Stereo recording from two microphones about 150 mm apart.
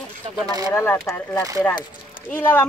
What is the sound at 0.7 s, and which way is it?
Speech, 15° left (ahead or behind).